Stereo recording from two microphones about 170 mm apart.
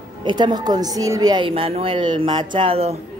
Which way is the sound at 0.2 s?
25° right (ahead or behind).